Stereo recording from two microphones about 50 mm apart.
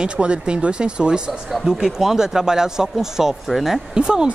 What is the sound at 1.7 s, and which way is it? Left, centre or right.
Speech, centre.